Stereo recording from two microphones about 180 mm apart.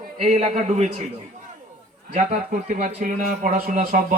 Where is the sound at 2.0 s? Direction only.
50° right (ahead or behind).